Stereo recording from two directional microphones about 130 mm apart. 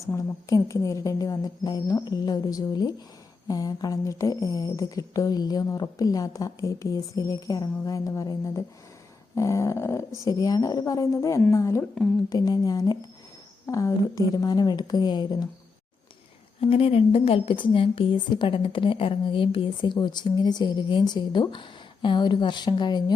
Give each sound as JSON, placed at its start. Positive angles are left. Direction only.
{"t": 0.0, "sound": "a woman's voice", "side_deg": 25}
{"t": 16.6, "sound": "a woman's voice", "side_deg": 45}